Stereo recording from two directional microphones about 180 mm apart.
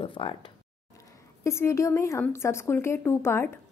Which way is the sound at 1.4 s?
15° left (ahead or behind).